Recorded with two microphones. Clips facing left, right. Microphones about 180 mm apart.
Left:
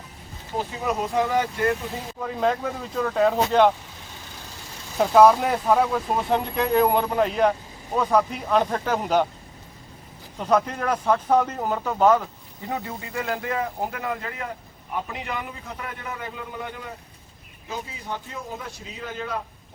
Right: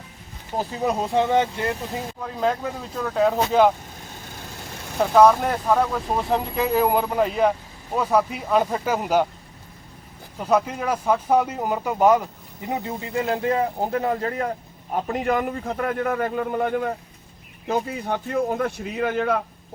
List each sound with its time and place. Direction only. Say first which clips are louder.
0.5 s speech: right 3 dB; 35° right (ahead or behind)
2.2 s speech: left 1 dB; centre (ahead or behind)
4.9 s speech: even; centre (ahead or behind)
10.3 s a man's voice: right 1 dB; 5° right (ahead or behind); by 19.4 s 60° right (ahead or behind)